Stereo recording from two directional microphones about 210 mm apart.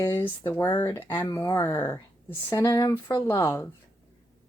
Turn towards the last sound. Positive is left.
turn(degrees=15)  # may be behind; listen again after turning